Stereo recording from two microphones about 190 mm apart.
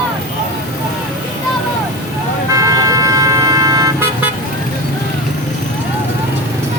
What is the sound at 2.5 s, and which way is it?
Vehicle, 20° right (ahead or behind).